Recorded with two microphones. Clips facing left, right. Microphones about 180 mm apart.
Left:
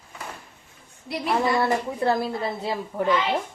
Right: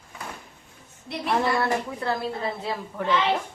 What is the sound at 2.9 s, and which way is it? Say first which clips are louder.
Speech: left 6 dB; 20° left (ahead or behind).